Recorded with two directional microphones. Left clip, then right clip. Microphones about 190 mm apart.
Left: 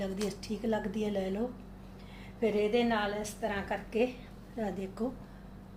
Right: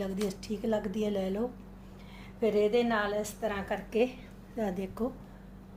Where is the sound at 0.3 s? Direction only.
35° right (ahead or behind).